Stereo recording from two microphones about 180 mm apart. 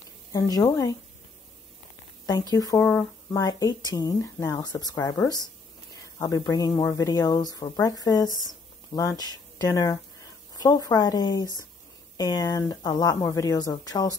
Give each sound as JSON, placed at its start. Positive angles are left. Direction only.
{"t": 0.3, "sound": "speech", "side_deg": 20}
{"t": 2.5, "sound": "speech", "side_deg": 15}
{"t": 6.1, "sound": "speech", "side_deg": 20}